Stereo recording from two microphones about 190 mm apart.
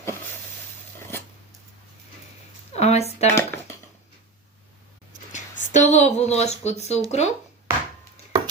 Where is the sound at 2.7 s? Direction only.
35° left (ahead or behind).